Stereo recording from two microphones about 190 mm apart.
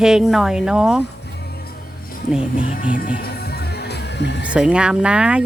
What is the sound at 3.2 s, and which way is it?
Music, 60° left (ahead or behind).